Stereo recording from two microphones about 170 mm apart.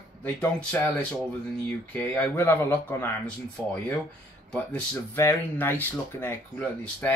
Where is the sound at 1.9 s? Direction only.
10° left (ahead or behind).